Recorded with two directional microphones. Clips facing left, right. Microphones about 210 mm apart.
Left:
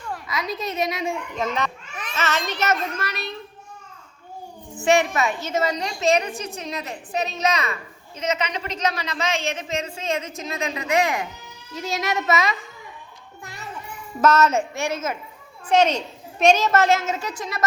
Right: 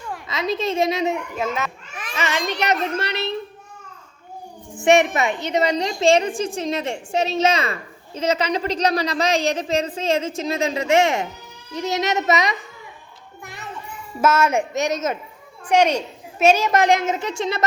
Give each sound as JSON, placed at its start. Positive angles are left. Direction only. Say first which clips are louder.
{"t": 0.3, "sound": "a woman's voice", "louder": "right 6 dB", "side_deg": -25}
{"t": 1.4, "sound": "a child's voice", "louder": "right 1 dB", "side_deg": -5}
{"t": 2.1, "sound": "a woman's voice", "louder": "right 1 dB", "side_deg": -15}
{"t": 3.0, "sound": "a woman's voice", "louder": "right 5 dB", "side_deg": -25}
{"t": 4.9, "sound": "a woman's voice", "louder": "right 3 dB", "side_deg": -20}
{"t": 13.4, "sound": "music", "louder": "right 1 dB", "side_deg": -20}
{"t": 14.2, "sound": "a woman's voice", "louder": "even", "side_deg": -10}